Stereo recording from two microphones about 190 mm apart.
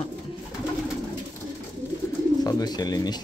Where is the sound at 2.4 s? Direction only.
20° left (ahead or behind).